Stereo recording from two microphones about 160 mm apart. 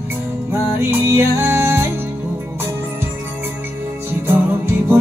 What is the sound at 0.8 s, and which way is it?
Music, 15° right (ahead or behind).